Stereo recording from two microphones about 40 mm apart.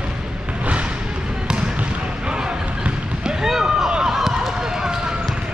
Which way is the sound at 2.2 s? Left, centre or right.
Right.